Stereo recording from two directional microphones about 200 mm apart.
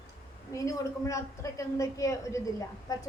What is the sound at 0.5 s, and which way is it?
A woman's voice, 15° left (ahead or behind).